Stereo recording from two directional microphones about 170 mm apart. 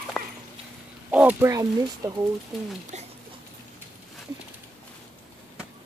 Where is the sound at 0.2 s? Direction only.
5° left (ahead or behind).